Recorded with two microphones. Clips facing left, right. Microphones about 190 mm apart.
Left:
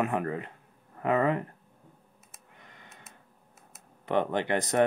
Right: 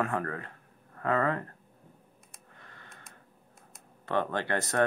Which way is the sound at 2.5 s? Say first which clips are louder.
Even; 15° left (ahead or behind).